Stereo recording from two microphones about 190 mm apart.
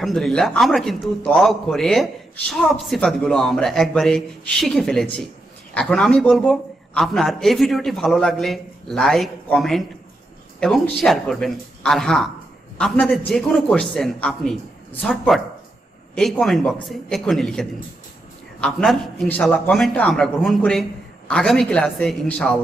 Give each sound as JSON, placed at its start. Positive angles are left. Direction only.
{"t": 0.0, "sound": "a man's voice", "side_deg": 0}